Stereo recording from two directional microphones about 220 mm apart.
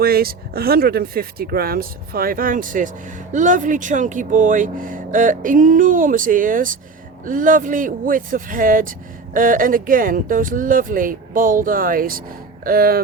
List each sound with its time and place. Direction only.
0.0 s speech: 45° right (ahead or behind)